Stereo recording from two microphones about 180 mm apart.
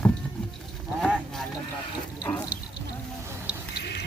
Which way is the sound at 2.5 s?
10° right (ahead or behind).